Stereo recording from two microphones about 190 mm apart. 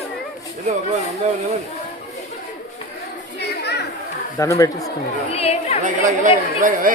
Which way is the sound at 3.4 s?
60° left (ahead or behind).